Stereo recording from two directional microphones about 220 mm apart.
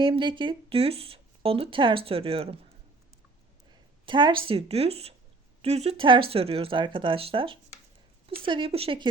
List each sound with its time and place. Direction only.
0.0 s speech: 20° right (ahead or behind)
4.0 s speech: 20° right (ahead or behind)